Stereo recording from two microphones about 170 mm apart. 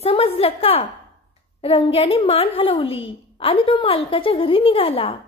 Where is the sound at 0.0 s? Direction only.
35° left (ahead or behind).